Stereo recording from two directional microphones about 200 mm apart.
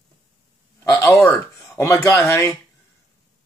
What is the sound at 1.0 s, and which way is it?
Speech, 15° left (ahead or behind).